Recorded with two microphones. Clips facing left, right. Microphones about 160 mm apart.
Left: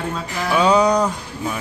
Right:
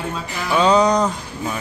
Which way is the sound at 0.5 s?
10° left (ahead or behind).